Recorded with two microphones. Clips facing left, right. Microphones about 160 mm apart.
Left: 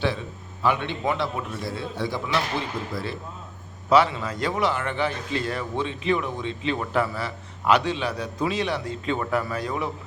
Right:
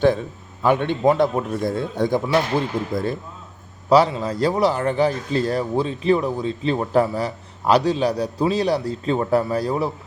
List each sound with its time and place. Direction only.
0.0 s a man's voice: 45° right (ahead or behind)
3.8 s a man's voice: 35° right (ahead or behind)